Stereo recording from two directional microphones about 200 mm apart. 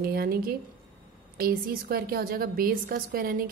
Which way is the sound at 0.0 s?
50° right (ahead or behind).